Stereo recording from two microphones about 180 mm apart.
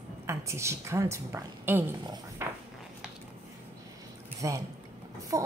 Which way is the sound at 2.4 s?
10° right (ahead or behind).